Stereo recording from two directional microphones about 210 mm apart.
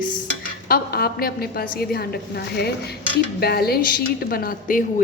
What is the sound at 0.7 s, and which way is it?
A woman's voice, 45° left (ahead or behind).